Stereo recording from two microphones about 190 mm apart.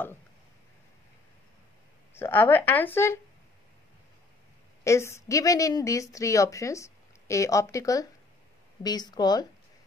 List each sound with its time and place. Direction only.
2.1 s speech: 10° left (ahead or behind)
4.8 s speech: 15° left (ahead or behind)